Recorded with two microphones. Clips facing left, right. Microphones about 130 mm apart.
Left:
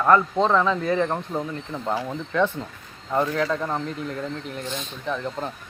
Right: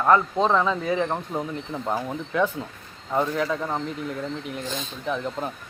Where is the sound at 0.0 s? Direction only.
10° right (ahead or behind).